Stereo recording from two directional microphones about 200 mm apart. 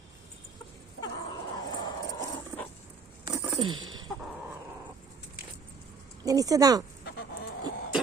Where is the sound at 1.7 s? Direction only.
20° left (ahead or behind).